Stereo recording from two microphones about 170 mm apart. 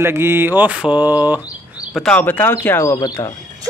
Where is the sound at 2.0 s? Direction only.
5° left (ahead or behind).